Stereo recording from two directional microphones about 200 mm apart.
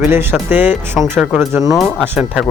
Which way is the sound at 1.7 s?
5° left (ahead or behind).